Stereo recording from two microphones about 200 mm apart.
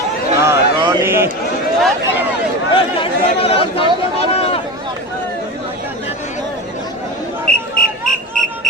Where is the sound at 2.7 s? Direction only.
25° left (ahead or behind).